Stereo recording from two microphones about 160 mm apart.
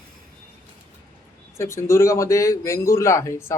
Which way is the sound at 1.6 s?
15° left (ahead or behind).